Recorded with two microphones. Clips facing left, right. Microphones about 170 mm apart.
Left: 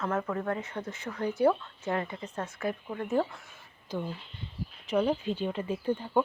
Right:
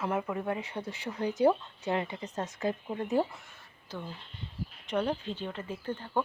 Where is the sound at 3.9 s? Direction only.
15° left (ahead or behind).